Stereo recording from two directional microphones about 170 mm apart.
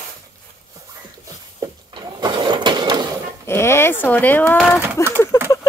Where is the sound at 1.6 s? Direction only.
25° right (ahead or behind).